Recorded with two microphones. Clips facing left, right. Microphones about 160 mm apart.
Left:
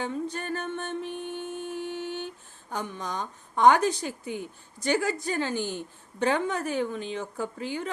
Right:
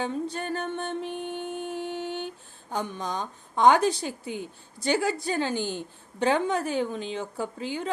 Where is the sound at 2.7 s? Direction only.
25° right (ahead or behind).